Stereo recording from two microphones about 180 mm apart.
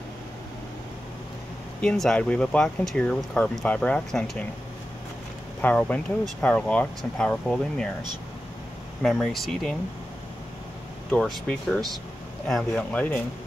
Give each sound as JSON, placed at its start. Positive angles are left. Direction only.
{"t": 1.8, "sound": "speech", "side_deg": 5}
{"t": 5.6, "sound": "speech", "side_deg": 10}
{"t": 9.0, "sound": "speech", "side_deg": 0}
{"t": 11.1, "sound": "speech", "side_deg": 5}